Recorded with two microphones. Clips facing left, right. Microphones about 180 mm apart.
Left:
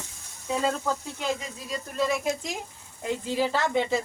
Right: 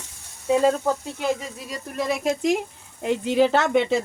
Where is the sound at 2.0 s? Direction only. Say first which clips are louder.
Right 9 dB; 70° right (ahead or behind).